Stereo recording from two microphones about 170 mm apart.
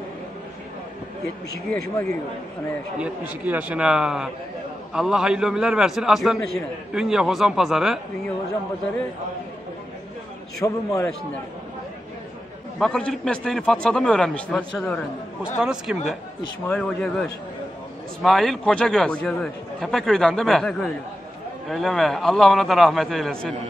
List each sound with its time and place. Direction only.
3.0 s a man's voice: 10° right (ahead or behind)
10.6 s a man's voice: 20° left (ahead or behind)
12.7 s a man's voice: 5° left (ahead or behind)
16.6 s a man's voice: 10° left (ahead or behind)